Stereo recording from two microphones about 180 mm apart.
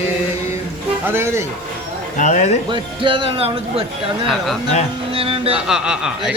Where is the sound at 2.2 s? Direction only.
40° left (ahead or behind).